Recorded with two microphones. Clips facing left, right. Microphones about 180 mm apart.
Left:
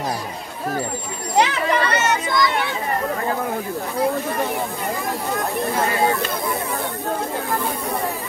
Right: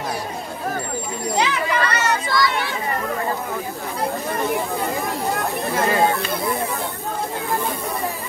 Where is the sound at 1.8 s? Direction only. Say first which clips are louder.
Left 1 dB; 25° left (ahead or behind).